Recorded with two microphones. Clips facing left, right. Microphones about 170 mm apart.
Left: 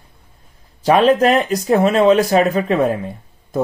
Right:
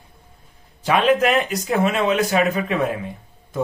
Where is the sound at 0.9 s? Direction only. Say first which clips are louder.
Left 5 dB; 35° left (ahead or behind).